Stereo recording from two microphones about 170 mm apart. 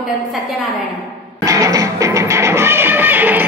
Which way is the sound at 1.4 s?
20° right (ahead or behind).